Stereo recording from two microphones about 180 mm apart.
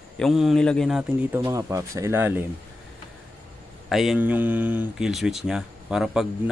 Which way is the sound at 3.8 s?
Centre (ahead or behind).